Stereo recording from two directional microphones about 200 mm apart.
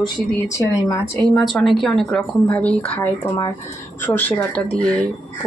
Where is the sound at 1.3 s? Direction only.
Centre (ahead or behind).